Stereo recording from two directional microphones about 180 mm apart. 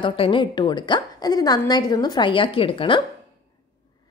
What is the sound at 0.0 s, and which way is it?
A woman's voice, 30° left (ahead or behind).